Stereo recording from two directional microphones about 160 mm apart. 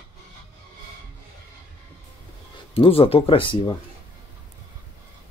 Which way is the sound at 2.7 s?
35° left (ahead or behind).